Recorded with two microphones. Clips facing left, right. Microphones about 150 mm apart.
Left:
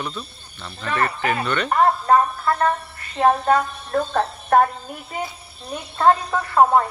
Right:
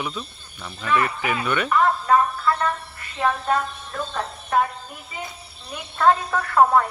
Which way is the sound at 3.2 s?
45° left (ahead or behind).